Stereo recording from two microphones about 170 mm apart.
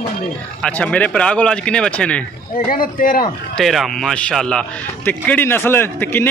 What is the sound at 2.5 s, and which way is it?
Speech, 55° left (ahead or behind).